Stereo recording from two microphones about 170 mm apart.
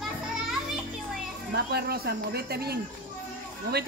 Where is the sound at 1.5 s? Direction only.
65° right (ahead or behind).